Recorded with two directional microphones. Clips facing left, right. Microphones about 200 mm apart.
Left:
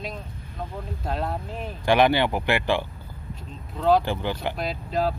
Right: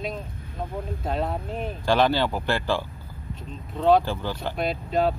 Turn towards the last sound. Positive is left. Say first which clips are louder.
# right 2 dB
turn(degrees=0)  # may be behind; listen again after turning